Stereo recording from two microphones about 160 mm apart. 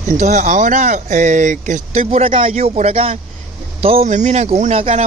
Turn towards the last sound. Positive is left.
turn(degrees=-40)  # may be behind; listen again after turning